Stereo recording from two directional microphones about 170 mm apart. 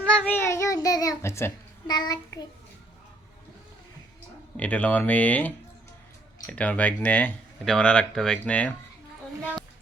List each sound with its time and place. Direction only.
0.2 s a child's voice: 10° left (ahead or behind)
4.5 s a child's voice: 10° left (ahead or behind)
6.5 s a child's voice: 5° left (ahead or behind)